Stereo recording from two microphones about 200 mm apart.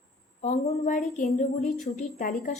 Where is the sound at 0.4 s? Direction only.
40° left (ahead or behind).